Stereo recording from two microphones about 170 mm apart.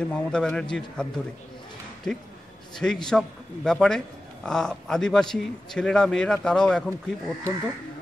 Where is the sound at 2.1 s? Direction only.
5° left (ahead or behind).